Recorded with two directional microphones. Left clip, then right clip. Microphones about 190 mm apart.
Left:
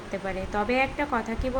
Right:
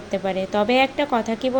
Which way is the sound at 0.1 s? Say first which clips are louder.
Right 8 dB; 20° right (ahead or behind).